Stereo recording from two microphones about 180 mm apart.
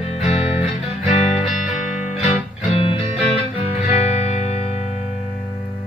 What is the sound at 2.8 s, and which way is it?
Music, 30° left (ahead or behind).